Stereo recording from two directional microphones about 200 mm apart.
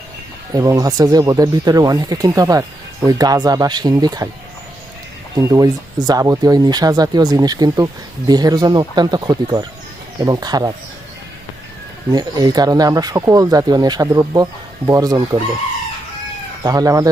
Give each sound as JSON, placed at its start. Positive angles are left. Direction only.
{"t": 0.5, "sound": "speech", "side_deg": -15}
{"t": 5.4, "sound": "speech", "side_deg": -15}
{"t": 12.1, "sound": "speech", "side_deg": -20}
{"t": 16.6, "sound": "speech", "side_deg": -20}